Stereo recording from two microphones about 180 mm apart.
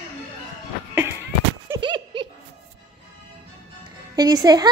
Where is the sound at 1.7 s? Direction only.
25° right (ahead or behind).